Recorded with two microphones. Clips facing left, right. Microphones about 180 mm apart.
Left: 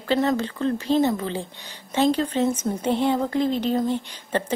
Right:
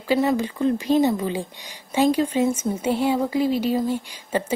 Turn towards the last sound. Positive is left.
turn(degrees=-10)  # may be behind; listen again after turning